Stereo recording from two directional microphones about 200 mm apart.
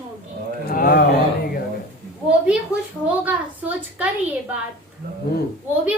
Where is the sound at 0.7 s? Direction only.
45° left (ahead or behind).